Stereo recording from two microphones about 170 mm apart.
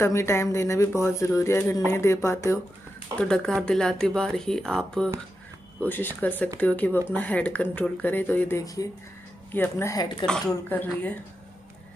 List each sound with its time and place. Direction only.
0.0 s speech: 15° left (ahead or behind)
3.2 s speech: 5° left (ahead or behind)
5.9 s speech: 10° left (ahead or behind)